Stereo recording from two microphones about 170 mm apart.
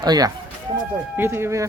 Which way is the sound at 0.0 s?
25° right (ahead or behind).